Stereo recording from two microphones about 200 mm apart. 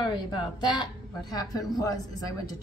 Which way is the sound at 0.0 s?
20° left (ahead or behind).